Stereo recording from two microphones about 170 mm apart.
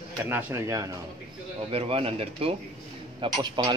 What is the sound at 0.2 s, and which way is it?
Speech, 15° right (ahead or behind).